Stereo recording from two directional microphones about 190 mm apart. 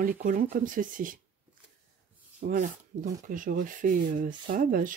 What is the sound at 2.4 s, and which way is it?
Speech, 40° right (ahead or behind).